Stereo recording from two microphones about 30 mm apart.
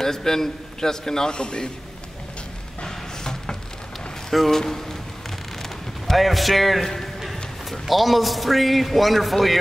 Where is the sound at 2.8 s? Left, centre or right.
Left.